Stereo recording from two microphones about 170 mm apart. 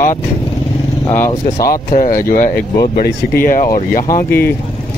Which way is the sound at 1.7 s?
55° left (ahead or behind).